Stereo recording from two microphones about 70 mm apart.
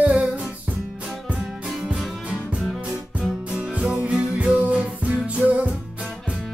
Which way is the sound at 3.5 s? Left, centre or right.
Centre.